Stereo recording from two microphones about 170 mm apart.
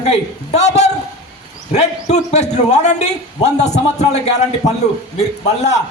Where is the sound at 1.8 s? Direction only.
40° left (ahead or behind).